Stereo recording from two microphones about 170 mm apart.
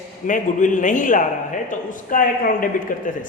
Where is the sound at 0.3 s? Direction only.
50° left (ahead or behind).